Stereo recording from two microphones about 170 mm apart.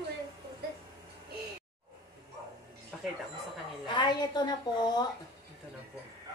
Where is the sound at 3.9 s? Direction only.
25° left (ahead or behind).